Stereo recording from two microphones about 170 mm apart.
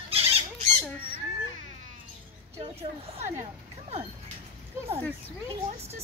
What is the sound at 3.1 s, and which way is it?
Speech, 40° right (ahead or behind).